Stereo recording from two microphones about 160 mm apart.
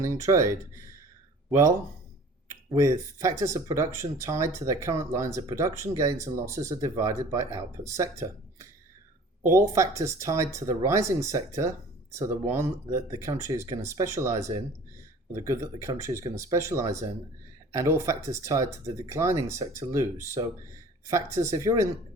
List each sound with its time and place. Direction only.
0.0 s speech: 20° right (ahead or behind)